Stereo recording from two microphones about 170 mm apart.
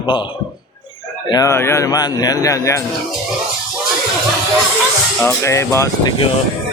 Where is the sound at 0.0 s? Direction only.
30° left (ahead or behind).